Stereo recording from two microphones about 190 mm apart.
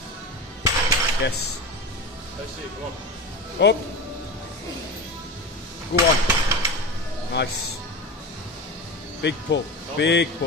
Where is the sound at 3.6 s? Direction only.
65° left (ahead or behind).